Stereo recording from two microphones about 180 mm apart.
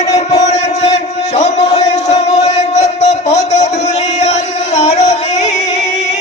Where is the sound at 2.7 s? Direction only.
40° left (ahead or behind).